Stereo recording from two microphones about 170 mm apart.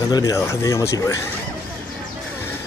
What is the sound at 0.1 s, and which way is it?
Speech, 20° left (ahead or behind).